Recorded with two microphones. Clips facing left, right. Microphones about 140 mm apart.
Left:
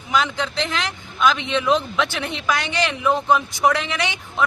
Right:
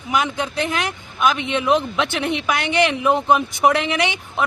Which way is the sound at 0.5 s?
50° right (ahead or behind).